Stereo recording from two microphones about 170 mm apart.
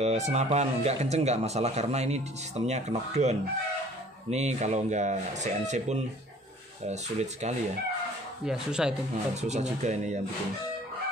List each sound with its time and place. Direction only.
0.0 s speech: 40° right (ahead or behind)
8.5 s speech: 5° right (ahead or behind)
9.4 s speech: 40° right (ahead or behind)